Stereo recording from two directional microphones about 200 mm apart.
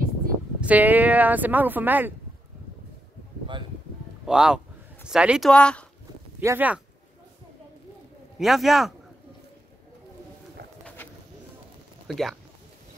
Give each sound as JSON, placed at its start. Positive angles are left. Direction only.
{"t": 0.6, "sound": "speech", "side_deg": -5}
{"t": 4.3, "sound": "speech", "side_deg": -5}
{"t": 6.4, "sound": "speech", "side_deg": -10}
{"t": 8.4, "sound": "speech", "side_deg": 0}
{"t": 12.1, "sound": "speech", "side_deg": 0}